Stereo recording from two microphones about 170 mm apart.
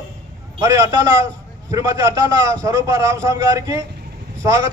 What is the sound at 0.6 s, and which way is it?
A man's voice, 20° right (ahead or behind).